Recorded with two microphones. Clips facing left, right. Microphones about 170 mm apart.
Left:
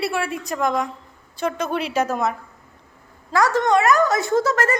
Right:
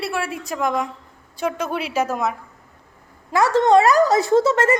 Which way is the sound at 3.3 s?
25° right (ahead or behind).